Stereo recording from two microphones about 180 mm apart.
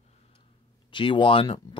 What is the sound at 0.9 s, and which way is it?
Speech, 25° left (ahead or behind).